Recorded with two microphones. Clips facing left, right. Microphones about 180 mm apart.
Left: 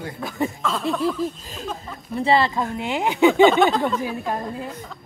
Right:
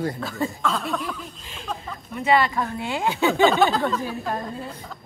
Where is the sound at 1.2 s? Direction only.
40° left (ahead or behind); by 3.5 s 20° left (ahead or behind).